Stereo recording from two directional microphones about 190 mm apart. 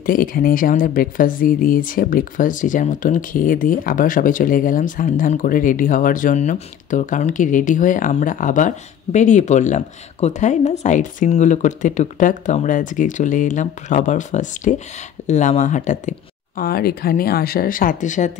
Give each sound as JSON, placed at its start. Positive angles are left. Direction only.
{"t": 0.0, "sound": "speech", "side_deg": 50}